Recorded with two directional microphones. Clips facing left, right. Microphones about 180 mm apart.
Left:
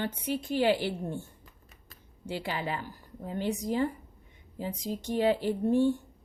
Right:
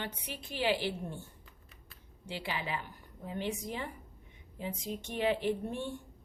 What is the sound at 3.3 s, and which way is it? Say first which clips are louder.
A woman's voice: left 6 dB; 40° left (ahead or behind).